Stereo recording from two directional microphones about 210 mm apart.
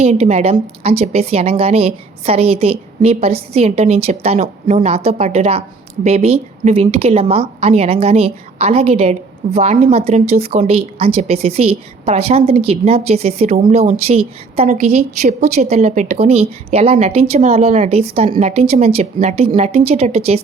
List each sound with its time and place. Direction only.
0.0 s a woman's voice: 30° right (ahead or behind)